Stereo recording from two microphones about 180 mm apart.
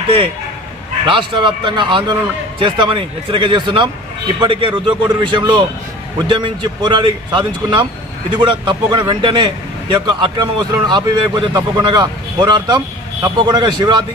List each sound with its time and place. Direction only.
1.0 s a man's voice: 25° right (ahead or behind)